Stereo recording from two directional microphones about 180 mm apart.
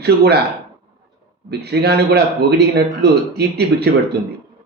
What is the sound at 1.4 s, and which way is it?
A man's voice, 65° right (ahead or behind).